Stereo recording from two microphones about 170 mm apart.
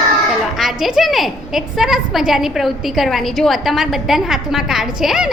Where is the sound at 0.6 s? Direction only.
Centre (ahead or behind).